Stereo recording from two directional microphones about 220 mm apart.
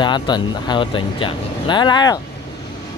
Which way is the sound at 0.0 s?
20° left (ahead or behind).